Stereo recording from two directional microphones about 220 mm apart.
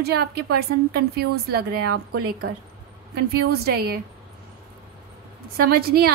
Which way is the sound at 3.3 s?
45° right (ahead or behind).